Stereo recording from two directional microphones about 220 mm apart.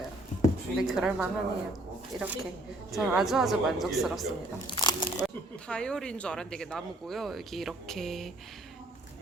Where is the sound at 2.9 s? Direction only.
Centre (ahead or behind).